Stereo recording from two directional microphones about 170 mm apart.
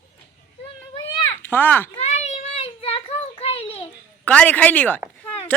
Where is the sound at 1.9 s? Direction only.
40° left (ahead or behind).